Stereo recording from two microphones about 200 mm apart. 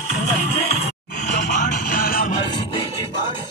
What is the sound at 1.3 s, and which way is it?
Music, 40° left (ahead or behind).